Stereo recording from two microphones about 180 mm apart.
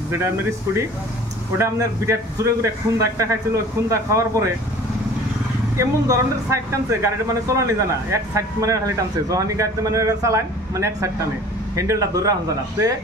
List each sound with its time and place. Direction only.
1.6 s speech: 15° right (ahead or behind)
5.8 s speech: 15° right (ahead or behind)